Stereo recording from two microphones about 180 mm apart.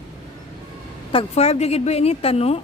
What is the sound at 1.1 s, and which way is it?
A woman's voice, 35° left (ahead or behind).